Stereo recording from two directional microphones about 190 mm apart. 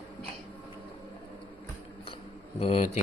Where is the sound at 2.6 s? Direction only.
30° left (ahead or behind).